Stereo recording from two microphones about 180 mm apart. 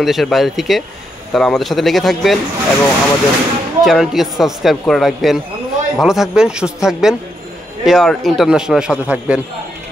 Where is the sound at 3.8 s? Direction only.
Centre (ahead or behind).